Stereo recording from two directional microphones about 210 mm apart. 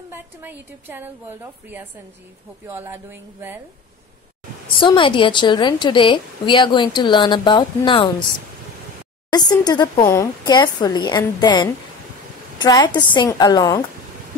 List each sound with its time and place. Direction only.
0.1 s a woman's voice: 10° right (ahead or behind)
4.7 s a woman's voice: 25° left (ahead or behind)
9.3 s a woman's voice: 20° left (ahead or behind)